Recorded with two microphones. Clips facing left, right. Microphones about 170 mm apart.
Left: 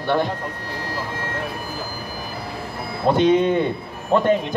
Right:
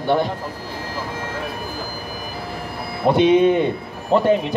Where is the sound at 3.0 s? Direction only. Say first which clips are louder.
Right 2 dB; 15° right (ahead or behind).